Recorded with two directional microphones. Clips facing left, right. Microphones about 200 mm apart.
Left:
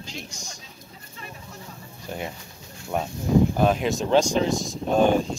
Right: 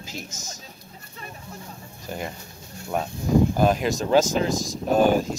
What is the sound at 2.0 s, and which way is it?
Speech, centre (ahead or behind).